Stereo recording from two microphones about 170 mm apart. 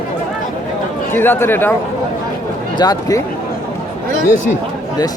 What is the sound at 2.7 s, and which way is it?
Speech, 20° left (ahead or behind).